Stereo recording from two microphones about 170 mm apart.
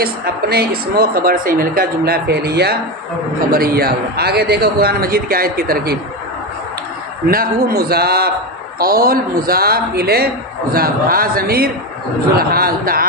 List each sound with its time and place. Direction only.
0.0 s a woman's voice: 65° right (ahead or behind)
7.2 s a woman's voice: 60° right (ahead or behind)